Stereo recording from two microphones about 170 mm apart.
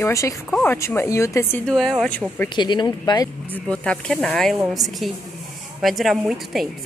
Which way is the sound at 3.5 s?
5° left (ahead or behind).